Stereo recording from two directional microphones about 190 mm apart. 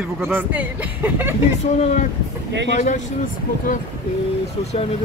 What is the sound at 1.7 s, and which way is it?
Speech, 35° left (ahead or behind).